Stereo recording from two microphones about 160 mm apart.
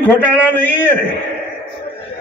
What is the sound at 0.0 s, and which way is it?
Speech, 10° left (ahead or behind).